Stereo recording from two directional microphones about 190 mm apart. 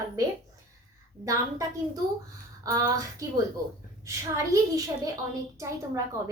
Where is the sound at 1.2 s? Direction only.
15° right (ahead or behind).